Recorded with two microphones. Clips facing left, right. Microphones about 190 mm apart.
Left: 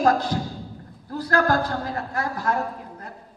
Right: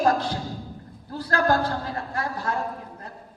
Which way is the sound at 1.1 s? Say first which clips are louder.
Left 1 dB; 30° right (ahead or behind).